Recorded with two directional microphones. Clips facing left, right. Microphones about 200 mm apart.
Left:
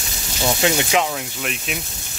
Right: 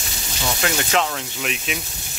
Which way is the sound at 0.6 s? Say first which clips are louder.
Left 5 dB; 20° left (ahead or behind).